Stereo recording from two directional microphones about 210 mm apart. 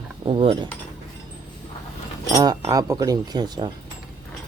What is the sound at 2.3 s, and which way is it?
Speech, 20° right (ahead or behind).